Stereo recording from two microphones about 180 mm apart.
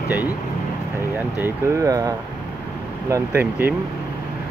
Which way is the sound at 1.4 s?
20° right (ahead or behind).